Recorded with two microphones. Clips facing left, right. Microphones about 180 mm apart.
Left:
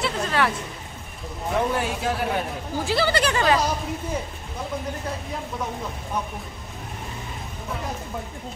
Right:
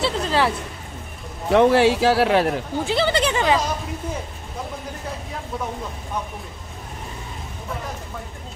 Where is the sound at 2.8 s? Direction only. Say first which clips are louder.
Right 1 dB; 20° right (ahead or behind).